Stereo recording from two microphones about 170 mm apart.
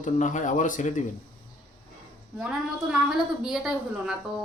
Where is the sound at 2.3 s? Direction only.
5° right (ahead or behind).